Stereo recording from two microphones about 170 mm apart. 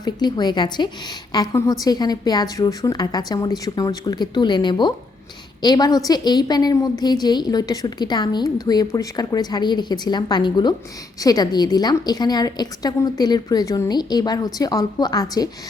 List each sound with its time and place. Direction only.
0.0 s a woman's voice: 25° left (ahead or behind)